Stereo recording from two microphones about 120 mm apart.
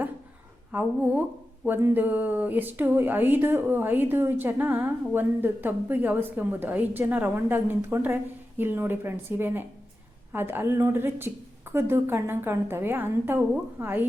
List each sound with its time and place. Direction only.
0.7 s a woman's voice: 15° right (ahead or behind)